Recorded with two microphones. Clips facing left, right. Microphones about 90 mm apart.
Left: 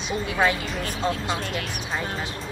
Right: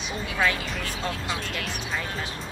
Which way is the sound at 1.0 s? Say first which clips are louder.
Left 6 dB; 25° left (ahead or behind).